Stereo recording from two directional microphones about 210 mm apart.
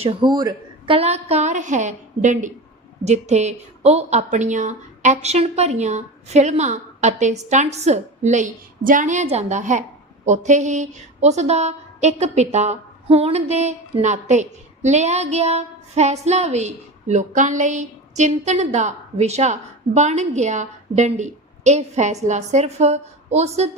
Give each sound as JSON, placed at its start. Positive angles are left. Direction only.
{"t": 0.0, "sound": "speech", "side_deg": -20}